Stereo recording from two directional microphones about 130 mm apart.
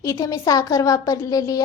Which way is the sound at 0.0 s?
25° left (ahead or behind).